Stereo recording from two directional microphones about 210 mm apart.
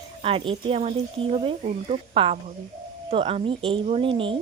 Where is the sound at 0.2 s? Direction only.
25° right (ahead or behind).